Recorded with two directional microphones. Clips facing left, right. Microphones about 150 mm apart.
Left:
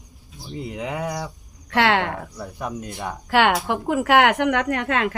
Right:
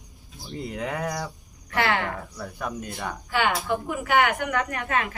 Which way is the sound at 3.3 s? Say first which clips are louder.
Left 6 dB; 80° left.